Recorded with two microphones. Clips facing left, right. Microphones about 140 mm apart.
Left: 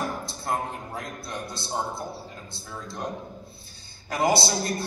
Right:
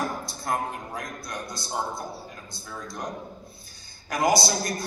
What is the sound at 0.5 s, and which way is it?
A man's voice, 25° left (ahead or behind).